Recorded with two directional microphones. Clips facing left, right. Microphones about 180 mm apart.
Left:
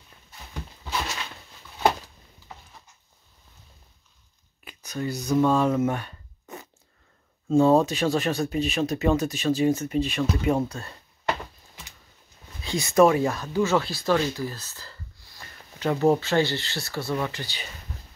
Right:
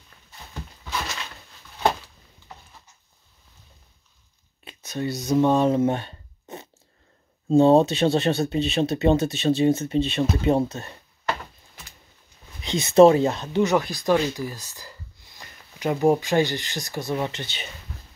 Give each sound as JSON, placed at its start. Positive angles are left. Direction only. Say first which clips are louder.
{"t": 4.6, "sound": "a sound", "louder": "right 2 dB", "side_deg": -25}
{"t": 7.4, "sound": "speech", "louder": "right 3 dB", "side_deg": -25}
{"t": 12.6, "sound": "speech", "louder": "right 5 dB", "side_deg": -20}